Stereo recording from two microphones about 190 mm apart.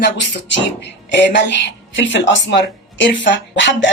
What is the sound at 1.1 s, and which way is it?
Speech, 70° left (ahead or behind).